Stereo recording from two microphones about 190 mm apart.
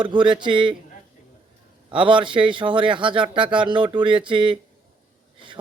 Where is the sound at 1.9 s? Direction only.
25° right (ahead or behind).